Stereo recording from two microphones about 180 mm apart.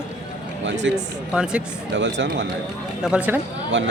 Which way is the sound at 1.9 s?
85° right.